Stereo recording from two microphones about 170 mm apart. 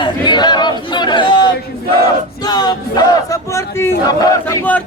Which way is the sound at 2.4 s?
25° left (ahead or behind).